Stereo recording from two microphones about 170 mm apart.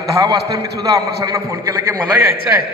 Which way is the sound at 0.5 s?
20° right (ahead or behind).